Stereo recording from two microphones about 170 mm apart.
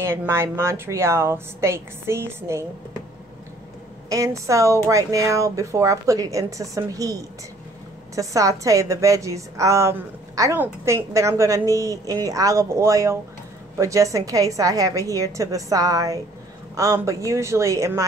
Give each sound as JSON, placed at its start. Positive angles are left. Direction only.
{"t": 0.0, "sound": "a woman's voice", "side_deg": -15}
{"t": 4.1, "sound": "a woman's voice", "side_deg": -20}